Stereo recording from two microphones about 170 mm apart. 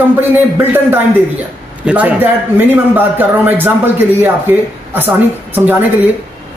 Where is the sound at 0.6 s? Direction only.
10° right (ahead or behind).